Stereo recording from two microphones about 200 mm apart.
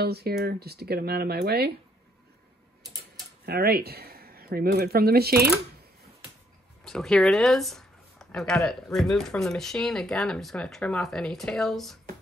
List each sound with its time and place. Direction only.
0.0 s speech: 55° right (ahead or behind)
3.4 s speech: 50° right (ahead or behind)
6.8 s speech: centre (ahead or behind)